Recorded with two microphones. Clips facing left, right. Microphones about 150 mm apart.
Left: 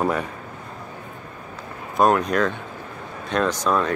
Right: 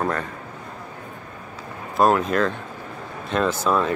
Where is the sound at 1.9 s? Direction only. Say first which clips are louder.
Even; centre (ahead or behind).